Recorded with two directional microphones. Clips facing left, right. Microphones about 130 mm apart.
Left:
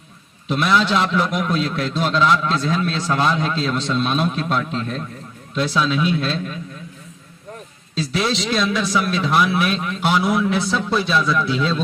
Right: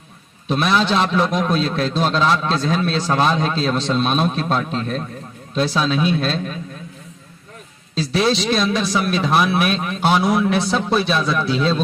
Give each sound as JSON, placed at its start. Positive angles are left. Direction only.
{"t": 0.4, "sound": "a man's voice", "side_deg": -25}
{"t": 7.9, "sound": "a man's voice", "side_deg": -30}